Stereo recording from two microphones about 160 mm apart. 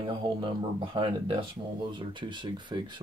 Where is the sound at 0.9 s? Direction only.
30° right (ahead or behind).